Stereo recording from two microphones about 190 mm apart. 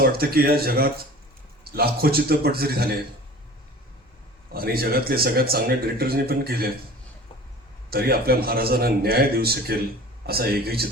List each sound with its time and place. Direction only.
0.0 s speech: 55° right (ahead or behind)
4.5 s speech: 50° right (ahead or behind)
7.9 s speech: 55° right (ahead or behind)